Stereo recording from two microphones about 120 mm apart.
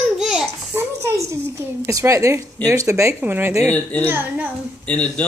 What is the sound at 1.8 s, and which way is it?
Speech, 25° right (ahead or behind).